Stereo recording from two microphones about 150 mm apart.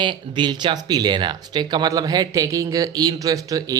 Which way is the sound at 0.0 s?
30° right (ahead or behind).